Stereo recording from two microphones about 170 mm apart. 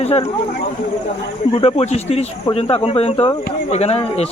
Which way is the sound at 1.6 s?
35° left (ahead or behind).